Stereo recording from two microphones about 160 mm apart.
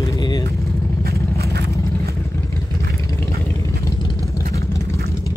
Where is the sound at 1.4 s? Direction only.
85° right.